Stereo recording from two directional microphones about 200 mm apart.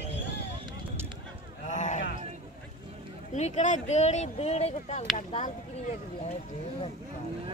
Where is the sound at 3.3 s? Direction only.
35° left (ahead or behind).